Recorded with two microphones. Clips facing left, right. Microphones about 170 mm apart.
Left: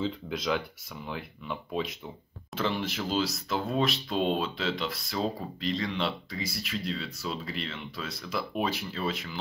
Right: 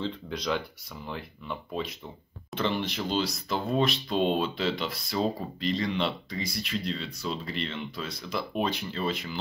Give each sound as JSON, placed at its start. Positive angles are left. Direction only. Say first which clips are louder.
{"t": 0.0, "sound": "speech", "louder": "left 1 dB", "side_deg": 0}